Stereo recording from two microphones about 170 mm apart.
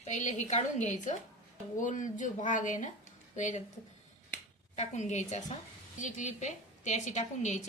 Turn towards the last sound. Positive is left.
turn(degrees=45)  # may be behind; listen again after turning